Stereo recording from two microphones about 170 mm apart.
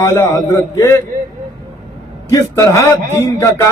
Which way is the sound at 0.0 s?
20° left (ahead or behind).